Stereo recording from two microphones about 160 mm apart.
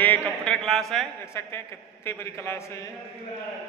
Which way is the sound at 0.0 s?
10° left (ahead or behind).